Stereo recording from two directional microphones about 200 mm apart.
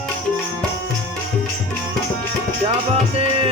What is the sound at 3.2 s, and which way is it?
Music, 30° right (ahead or behind).